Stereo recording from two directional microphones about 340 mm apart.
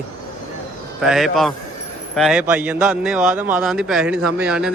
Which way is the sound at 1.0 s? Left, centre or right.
Centre.